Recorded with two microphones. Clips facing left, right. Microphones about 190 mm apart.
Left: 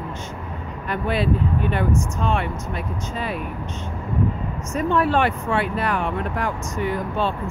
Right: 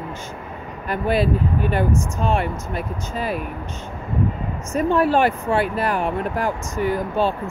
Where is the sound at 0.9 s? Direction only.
40° right (ahead or behind).